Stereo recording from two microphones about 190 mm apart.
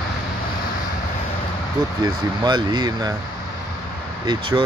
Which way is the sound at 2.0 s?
20° right (ahead or behind).